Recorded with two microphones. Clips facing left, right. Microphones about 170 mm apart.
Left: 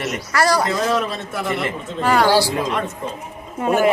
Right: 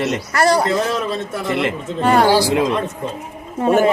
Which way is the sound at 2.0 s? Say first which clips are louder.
Right 3 dB; 30° right (ahead or behind).